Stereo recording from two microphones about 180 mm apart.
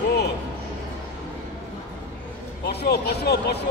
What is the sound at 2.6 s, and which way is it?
Speech, 65° left (ahead or behind).